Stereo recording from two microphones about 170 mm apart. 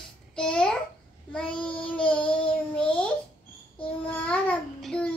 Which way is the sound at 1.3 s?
5° left (ahead or behind).